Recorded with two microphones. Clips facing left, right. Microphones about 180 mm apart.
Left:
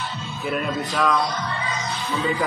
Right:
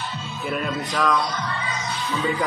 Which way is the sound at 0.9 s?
Centre (ahead or behind).